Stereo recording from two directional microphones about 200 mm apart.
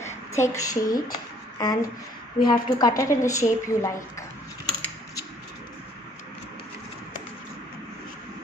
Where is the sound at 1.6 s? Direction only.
20° left (ahead or behind).